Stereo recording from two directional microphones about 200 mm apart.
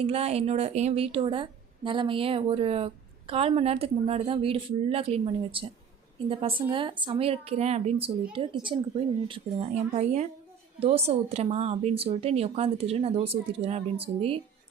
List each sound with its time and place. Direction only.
0.0 s a woman's voice: 30° right (ahead or behind)